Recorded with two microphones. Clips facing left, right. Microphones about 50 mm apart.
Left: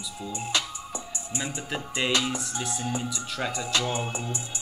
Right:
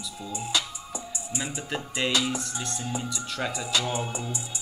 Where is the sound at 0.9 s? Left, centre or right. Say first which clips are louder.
Right 1 dB; centre.